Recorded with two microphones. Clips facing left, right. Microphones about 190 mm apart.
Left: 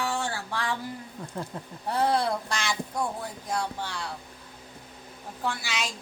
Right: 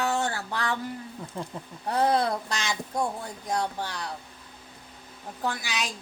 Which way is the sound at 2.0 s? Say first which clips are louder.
Right 1 dB; 20° right (ahead or behind).